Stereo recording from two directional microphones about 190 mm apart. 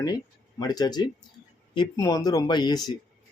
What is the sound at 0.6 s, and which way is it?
Speech, 20° left (ahead or behind).